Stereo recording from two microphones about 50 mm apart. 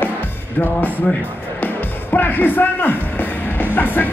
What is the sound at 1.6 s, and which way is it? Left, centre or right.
Music, left.